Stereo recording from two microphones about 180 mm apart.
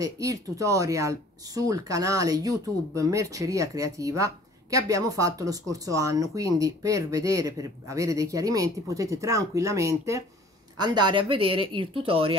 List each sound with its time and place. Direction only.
0.0 s speech: 20° right (ahead or behind)